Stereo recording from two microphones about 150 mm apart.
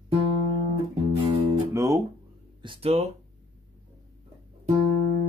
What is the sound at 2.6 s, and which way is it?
Speech, 40° right (ahead or behind).